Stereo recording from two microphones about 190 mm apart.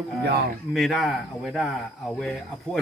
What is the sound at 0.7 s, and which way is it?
Speech, centre (ahead or behind).